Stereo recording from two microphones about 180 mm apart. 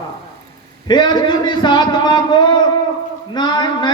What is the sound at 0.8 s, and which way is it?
A man's voice, 25° left (ahead or behind).